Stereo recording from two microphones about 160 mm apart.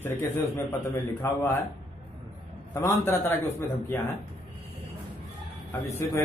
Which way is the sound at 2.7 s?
15° left (ahead or behind).